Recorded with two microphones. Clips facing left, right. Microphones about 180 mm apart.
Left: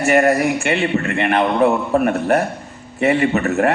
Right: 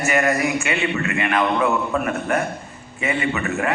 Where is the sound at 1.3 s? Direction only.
35° left (ahead or behind).